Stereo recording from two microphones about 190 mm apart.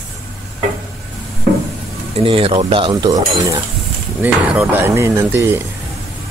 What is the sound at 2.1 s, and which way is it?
Speech, 30° right (ahead or behind).